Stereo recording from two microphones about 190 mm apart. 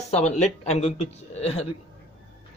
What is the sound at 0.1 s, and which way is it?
Speech, 35° left (ahead or behind).